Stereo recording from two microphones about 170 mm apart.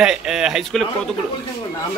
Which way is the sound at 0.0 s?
5° right (ahead or behind).